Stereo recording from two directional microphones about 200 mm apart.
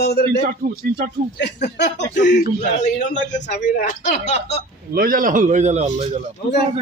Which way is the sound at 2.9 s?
40° left (ahead or behind).